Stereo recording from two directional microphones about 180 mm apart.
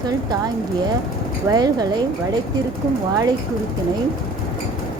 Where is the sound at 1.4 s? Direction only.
20° right (ahead or behind).